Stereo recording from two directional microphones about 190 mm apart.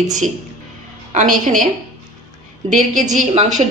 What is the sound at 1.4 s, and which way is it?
Speech, 40° right (ahead or behind).